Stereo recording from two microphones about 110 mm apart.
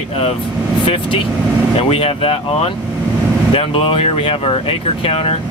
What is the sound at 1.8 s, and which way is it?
Speech, 60° left (ahead or behind).